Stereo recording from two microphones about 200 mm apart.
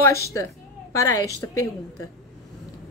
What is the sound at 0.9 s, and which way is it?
Speech, 15° left (ahead or behind).